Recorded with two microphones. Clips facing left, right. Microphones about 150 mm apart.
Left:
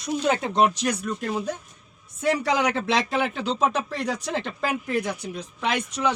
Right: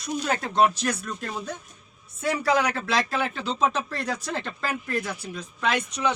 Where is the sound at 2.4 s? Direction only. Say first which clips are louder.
Even; 20° left (ahead or behind).